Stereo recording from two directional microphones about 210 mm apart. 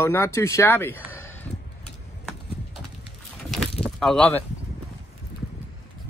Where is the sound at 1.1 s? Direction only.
10° left (ahead or behind).